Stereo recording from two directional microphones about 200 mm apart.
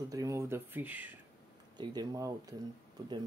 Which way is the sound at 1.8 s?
20° right (ahead or behind).